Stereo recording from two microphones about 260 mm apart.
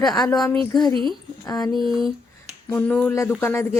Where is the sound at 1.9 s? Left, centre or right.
Centre.